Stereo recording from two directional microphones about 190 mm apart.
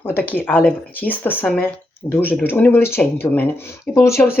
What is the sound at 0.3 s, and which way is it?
Speech, 10° left (ahead or behind).